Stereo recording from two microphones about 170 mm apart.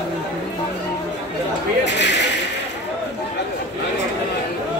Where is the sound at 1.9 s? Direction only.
90° left.